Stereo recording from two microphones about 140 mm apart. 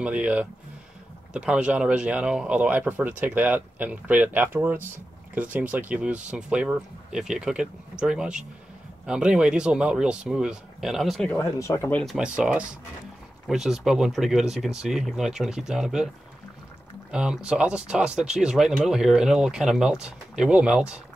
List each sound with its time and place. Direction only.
0.0 s speech: 10° right (ahead or behind)
11.2 s speech: 20° left (ahead or behind)
12.0 s speech: centre (ahead or behind)
17.1 s speech: 5° right (ahead or behind)